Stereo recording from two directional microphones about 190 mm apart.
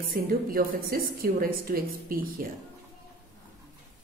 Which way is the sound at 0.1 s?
50° right (ahead or behind).